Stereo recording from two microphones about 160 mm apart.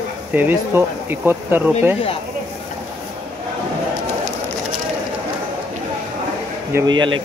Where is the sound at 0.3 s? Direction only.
10° right (ahead or behind).